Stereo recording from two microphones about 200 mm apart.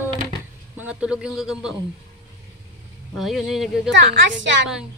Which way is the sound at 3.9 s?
65° right (ahead or behind).